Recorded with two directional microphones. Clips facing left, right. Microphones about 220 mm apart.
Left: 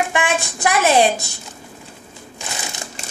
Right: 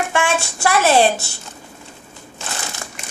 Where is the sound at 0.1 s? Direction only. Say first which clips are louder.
Right 1 dB; 15° left (ahead or behind).